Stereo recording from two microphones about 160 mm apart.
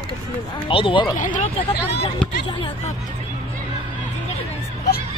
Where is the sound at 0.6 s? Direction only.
30° left (ahead or behind).